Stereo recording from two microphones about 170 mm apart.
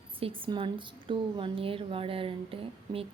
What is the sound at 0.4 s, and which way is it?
A woman's voice, 30° right (ahead or behind).